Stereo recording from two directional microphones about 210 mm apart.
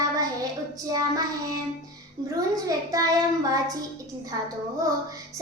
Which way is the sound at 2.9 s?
15° right (ahead or behind).